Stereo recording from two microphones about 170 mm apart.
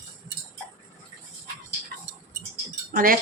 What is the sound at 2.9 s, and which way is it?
Wind chime, 55° right (ahead or behind).